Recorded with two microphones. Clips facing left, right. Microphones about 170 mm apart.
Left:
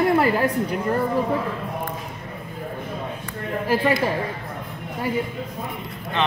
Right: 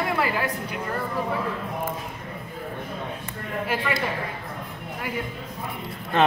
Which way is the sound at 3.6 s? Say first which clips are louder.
Left 7 dB; 35° left (ahead or behind).